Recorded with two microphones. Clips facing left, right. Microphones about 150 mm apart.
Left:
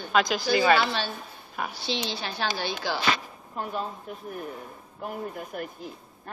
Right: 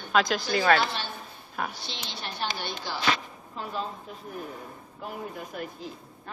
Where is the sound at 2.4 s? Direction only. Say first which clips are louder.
Left 3 dB; 90° left.